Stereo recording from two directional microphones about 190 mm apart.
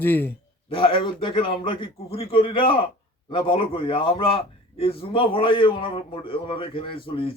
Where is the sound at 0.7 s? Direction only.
25° left (ahead or behind).